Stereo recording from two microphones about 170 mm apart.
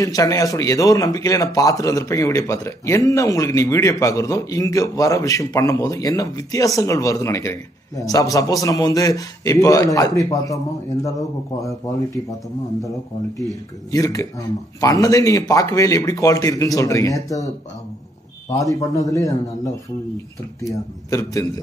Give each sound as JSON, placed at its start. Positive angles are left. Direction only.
{"t": 0.0, "sound": "speech", "side_deg": 20}
{"t": 13.9, "sound": "speech", "side_deg": 20}
{"t": 18.5, "sound": "speech", "side_deg": 20}
{"t": 21.1, "sound": "speech", "side_deg": 20}